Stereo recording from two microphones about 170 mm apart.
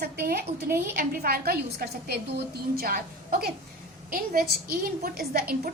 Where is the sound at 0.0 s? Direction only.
60° right (ahead or behind).